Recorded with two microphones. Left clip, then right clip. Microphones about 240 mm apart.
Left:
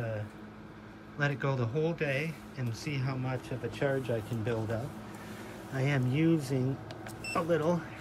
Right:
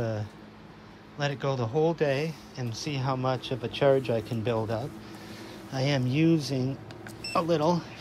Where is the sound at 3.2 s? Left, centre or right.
Right.